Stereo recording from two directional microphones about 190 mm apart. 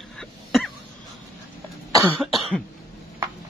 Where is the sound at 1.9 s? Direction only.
15° right (ahead or behind).